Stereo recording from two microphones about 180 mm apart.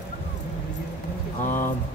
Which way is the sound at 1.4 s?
45° left (ahead or behind).